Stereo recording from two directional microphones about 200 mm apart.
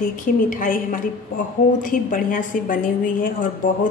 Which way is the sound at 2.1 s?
40° left (ahead or behind).